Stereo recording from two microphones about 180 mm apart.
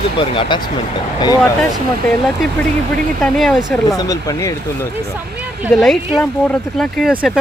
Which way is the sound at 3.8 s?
20° left (ahead or behind).